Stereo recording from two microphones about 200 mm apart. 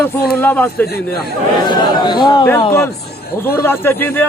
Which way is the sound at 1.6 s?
20° left (ahead or behind).